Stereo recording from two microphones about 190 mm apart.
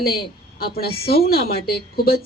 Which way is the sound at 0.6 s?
55° left (ahead or behind).